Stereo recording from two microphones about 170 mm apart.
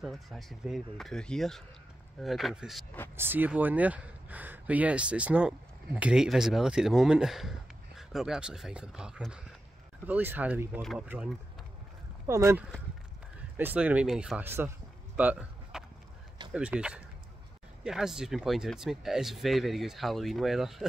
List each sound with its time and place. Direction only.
0.0 s speech: centre (ahead or behind)
12.3 s speech: 15° right (ahead or behind)
14.4 s speech: 15° right (ahead or behind)
15.1 s a sound: 5° right (ahead or behind)
16.5 s speech: 5° right (ahead or behind)